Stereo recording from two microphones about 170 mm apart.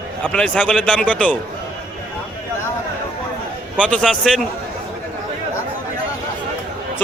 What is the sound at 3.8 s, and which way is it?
Speech, 5° left (ahead or behind).